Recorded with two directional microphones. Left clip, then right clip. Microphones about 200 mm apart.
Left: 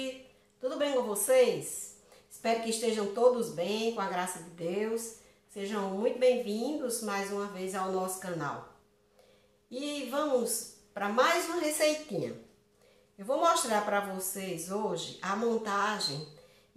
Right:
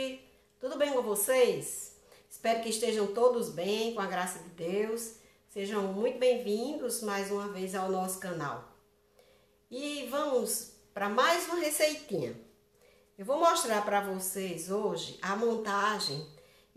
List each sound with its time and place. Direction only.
0.6 s a woman's voice: 30° right (ahead or behind)
9.7 s speech: 30° right (ahead or behind)